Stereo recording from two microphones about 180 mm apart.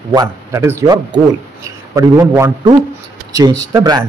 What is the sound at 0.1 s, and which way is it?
Speech, 20° right (ahead or behind).